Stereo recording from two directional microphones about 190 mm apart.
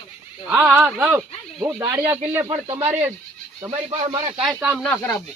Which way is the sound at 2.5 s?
25° right (ahead or behind).